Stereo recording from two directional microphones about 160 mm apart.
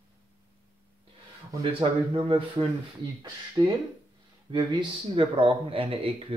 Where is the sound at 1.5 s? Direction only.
30° right (ahead or behind).